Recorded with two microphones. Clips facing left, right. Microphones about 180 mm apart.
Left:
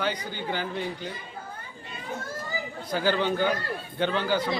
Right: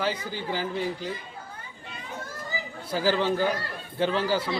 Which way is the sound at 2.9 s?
5° right (ahead or behind).